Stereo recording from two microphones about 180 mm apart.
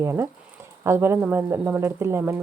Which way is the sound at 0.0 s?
15° right (ahead or behind).